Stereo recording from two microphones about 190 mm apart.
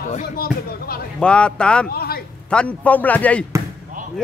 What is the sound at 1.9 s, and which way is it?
Speech, 50° left (ahead or behind).